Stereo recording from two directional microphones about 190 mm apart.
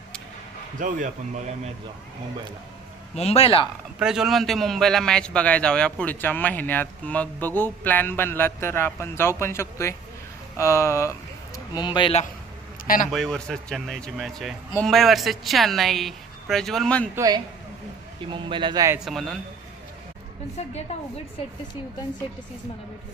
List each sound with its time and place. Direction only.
0.8 s speech: 45° right (ahead or behind)
3.2 s speech: 35° left (ahead or behind)
4.0 s a man's voice: 5° right (ahead or behind); by 12.2 s 25° left (ahead or behind)
13.1 s speech: centre (ahead or behind)
17.2 s speech: 20° right (ahead or behind)
18.9 s speech: centre (ahead or behind)